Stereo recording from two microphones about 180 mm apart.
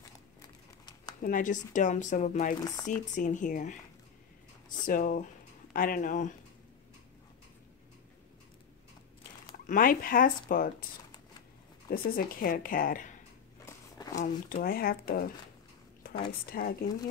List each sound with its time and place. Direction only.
0.0 s a sound: 20° left (ahead or behind)
1.2 s speech: 45° left (ahead or behind)
4.8 s speech: 50° left (ahead or behind)
9.7 s speech: 50° left (ahead or behind)
11.9 s speech: 55° left (ahead or behind)
13.7 s a sound: 20° left (ahead or behind)
14.1 s speech: 50° left (ahead or behind)
16.3 s speech: 55° left (ahead or behind)